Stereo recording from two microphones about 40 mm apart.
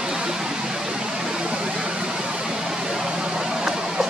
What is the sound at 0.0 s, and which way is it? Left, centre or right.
Music, centre.